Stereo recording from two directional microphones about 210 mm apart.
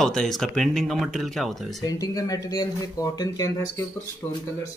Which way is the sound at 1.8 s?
15° left (ahead or behind).